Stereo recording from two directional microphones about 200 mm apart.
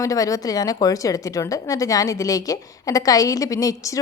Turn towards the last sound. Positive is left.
turn(degrees=15)  # may be behind; listen again after turning